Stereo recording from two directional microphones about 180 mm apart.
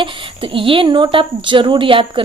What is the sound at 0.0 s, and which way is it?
A woman's voice, 30° right (ahead or behind).